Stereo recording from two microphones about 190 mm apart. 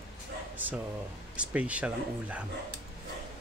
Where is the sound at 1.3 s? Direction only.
5° right (ahead or behind).